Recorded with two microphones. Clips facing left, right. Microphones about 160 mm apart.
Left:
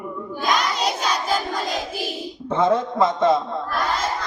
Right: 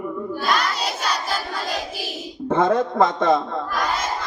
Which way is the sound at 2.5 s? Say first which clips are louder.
Right 1 dB; 50° right (ahead or behind).